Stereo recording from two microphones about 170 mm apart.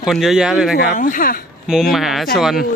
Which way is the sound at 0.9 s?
50° left (ahead or behind).